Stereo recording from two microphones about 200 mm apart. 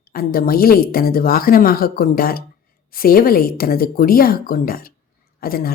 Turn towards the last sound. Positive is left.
turn(degrees=45)  # may be behind; listen again after turning